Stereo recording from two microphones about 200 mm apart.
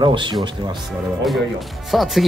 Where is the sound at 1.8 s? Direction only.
Centre (ahead or behind).